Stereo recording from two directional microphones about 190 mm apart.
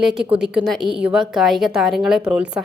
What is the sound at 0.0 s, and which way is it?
A woman's voice, 5° right (ahead or behind).